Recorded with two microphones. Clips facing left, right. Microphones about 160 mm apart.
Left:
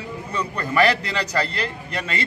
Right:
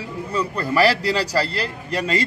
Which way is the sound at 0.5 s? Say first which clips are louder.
Right 1 dB; 35° right (ahead or behind).